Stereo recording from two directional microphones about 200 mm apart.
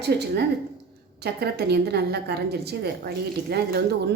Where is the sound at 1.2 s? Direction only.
55° right (ahead or behind).